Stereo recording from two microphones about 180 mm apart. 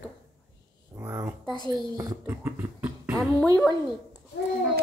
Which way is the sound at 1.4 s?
25° left (ahead or behind).